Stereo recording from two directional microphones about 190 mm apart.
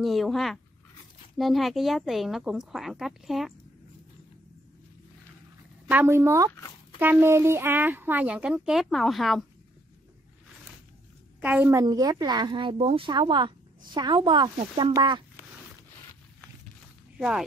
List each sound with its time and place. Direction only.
0.0 s speech: centre (ahead or behind)
5.9 s speech: 10° right (ahead or behind)
11.4 s speech: 10° right (ahead or behind)
11.8 s speech: 20° right (ahead or behind)